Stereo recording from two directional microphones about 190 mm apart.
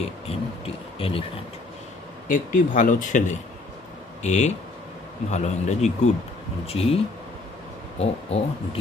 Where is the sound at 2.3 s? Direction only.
45° left (ahead or behind).